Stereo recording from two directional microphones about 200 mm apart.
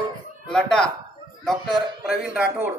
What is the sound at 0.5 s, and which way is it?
Speech, 5° left (ahead or behind).